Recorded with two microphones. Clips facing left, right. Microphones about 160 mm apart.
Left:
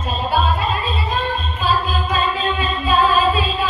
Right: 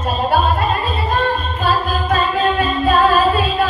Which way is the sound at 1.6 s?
55° right (ahead or behind).